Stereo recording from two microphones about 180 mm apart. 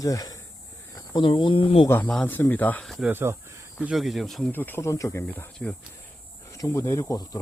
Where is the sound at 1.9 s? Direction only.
5° left (ahead or behind).